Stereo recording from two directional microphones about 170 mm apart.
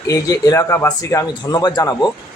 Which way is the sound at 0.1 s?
20° left (ahead or behind).